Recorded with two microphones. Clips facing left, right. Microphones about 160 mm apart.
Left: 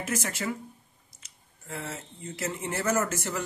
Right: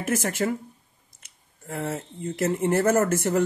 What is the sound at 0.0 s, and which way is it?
Speech, 55° right (ahead or behind).